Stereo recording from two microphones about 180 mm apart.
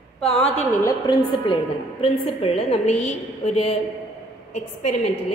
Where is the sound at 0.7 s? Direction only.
20° left (ahead or behind); by 3.1 s 40° left (ahead or behind).